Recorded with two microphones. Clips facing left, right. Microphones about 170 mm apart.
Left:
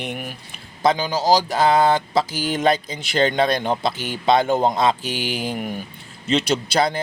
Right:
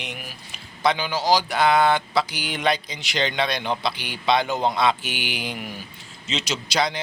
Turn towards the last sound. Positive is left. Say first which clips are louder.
# left 5 dB
turn(degrees=50)  # may be behind; listen again after turning